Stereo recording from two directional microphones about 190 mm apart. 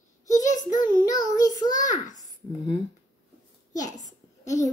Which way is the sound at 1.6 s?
40° left (ahead or behind).